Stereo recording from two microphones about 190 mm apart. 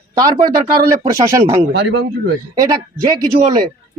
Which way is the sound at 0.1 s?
20° right (ahead or behind).